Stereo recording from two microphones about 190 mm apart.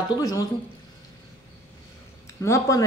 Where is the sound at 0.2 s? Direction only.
20° left (ahead or behind).